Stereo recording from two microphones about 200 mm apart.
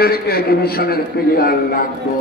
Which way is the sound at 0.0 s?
50° left (ahead or behind).